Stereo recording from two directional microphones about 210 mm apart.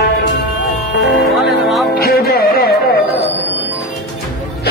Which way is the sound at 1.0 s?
50° left (ahead or behind).